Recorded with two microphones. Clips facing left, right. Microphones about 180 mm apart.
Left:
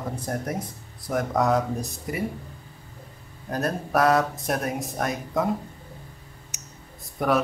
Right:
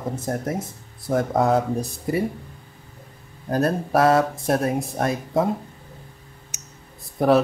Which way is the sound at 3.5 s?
30° right (ahead or behind).